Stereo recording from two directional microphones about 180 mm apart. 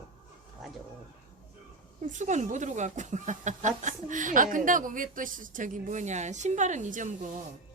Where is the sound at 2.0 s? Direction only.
40° right (ahead or behind).